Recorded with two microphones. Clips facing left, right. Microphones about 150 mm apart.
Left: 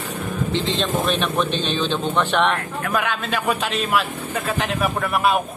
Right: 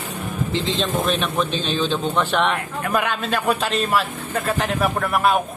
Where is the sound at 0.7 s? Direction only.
Centre (ahead or behind).